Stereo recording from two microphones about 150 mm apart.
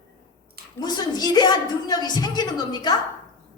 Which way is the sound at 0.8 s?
25° left (ahead or behind).